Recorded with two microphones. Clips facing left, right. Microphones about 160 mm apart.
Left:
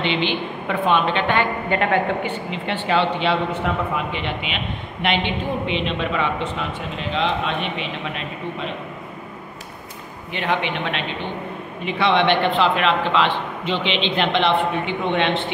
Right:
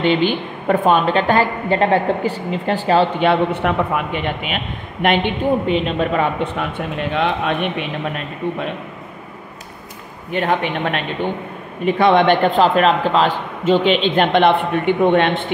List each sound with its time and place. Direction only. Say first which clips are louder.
0.0 s a woman's voice: right 6 dB; 45° right (ahead or behind)
7.0 s a man's voice: right 3 dB; 55° right (ahead or behind)
10.3 s a woman's voice: right 4 dB; 45° right (ahead or behind)